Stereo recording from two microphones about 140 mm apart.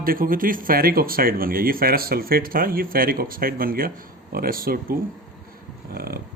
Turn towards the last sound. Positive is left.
turn(degrees=-90)